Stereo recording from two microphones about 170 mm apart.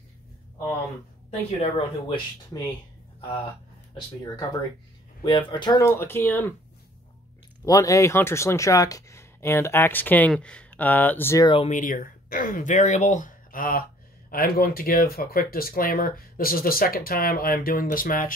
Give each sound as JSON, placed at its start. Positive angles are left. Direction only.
{"t": 1.3, "sound": "speech", "side_deg": 35}
{"t": 5.2, "sound": "speech", "side_deg": 25}
{"t": 7.6, "sound": "speech", "side_deg": 20}
{"t": 11.4, "sound": "speech", "side_deg": 35}
{"t": 11.7, "sound": "speech", "side_deg": 50}